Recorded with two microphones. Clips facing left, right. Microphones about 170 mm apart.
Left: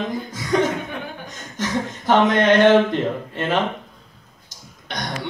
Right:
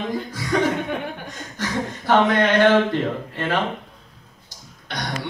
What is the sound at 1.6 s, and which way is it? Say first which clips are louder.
Speech: left 2 dB; 20° left (ahead or behind).